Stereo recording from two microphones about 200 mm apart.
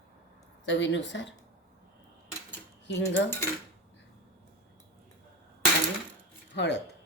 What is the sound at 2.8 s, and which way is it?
Speech, 60° left (ahead or behind).